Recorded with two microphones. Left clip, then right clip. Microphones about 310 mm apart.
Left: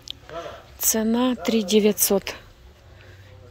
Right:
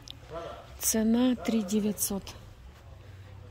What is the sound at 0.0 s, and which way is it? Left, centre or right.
A woman's voice, centre.